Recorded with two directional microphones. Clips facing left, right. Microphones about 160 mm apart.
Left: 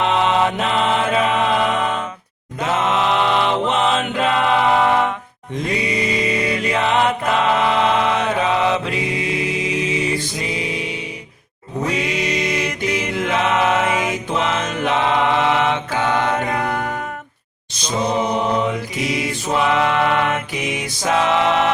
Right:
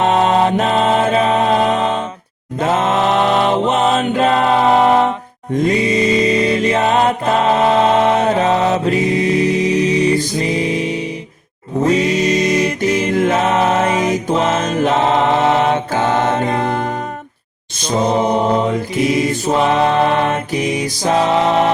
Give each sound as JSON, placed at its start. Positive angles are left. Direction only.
{"t": 0.0, "sound": "music", "side_deg": -40}
{"t": 2.6, "sound": "chant", "side_deg": -50}
{"t": 5.9, "sound": "music", "side_deg": -25}
{"t": 6.6, "sound": "music", "side_deg": -40}
{"t": 16.3, "sound": "mantra", "side_deg": -25}
{"t": 17.8, "sound": "mantra", "side_deg": -50}